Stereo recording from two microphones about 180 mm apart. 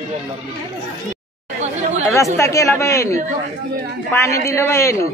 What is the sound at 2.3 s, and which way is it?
Speech, 15° left (ahead or behind).